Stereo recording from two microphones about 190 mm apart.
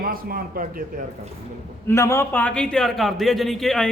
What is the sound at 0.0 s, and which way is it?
Speech, 50° right (ahead or behind).